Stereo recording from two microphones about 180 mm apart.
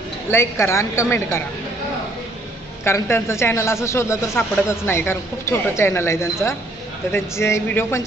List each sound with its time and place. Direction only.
0.3 s a woman's voice: 15° left (ahead or behind)
2.8 s a woman's voice: 15° left (ahead or behind)